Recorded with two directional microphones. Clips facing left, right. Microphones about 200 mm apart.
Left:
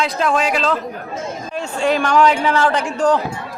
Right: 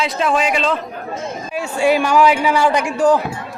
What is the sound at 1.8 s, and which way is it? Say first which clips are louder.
A man's voice: right 1 dB; 10° right (ahead or behind).